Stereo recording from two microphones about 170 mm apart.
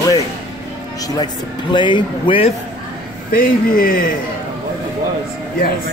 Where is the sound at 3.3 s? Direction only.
55° left (ahead or behind).